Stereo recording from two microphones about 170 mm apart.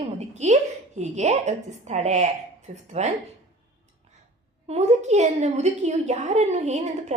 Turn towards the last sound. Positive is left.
turn(degrees=-40)  # may be behind; listen again after turning